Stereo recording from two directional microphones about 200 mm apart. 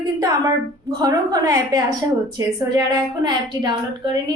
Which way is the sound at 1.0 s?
20° right (ahead or behind).